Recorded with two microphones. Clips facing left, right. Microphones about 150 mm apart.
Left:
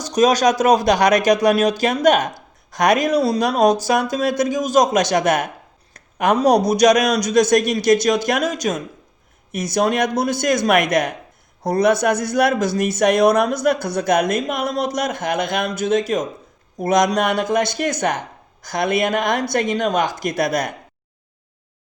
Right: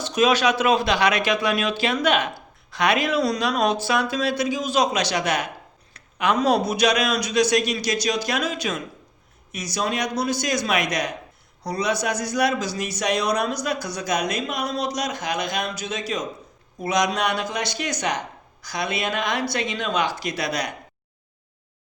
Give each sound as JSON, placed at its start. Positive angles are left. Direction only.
{"t": 0.0, "sound": "speech", "side_deg": 40}
{"t": 5.9, "sound": "a sound", "side_deg": 45}
{"t": 6.3, "sound": "speech", "side_deg": 40}